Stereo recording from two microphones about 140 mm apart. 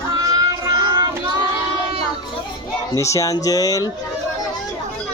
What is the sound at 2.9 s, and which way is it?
Speech, 20° left (ahead or behind).